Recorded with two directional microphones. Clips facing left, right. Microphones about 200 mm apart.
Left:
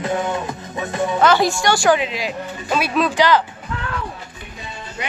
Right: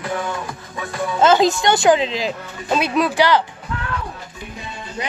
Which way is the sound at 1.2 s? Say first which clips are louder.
Right 3 dB; 20° right (ahead or behind).